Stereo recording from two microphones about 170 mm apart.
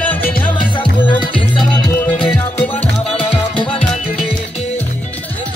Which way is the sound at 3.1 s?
30° left (ahead or behind).